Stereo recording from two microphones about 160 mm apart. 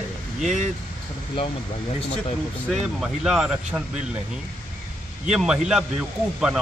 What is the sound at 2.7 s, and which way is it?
Speech, 5° right (ahead or behind).